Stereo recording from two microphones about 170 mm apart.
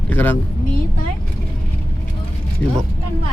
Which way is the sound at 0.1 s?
10° left (ahead or behind).